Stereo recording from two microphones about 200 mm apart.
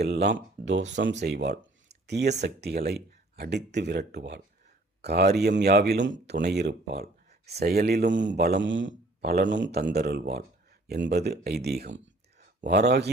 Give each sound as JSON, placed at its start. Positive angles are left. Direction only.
{"t": 0.0, "sound": "speech", "side_deg": -55}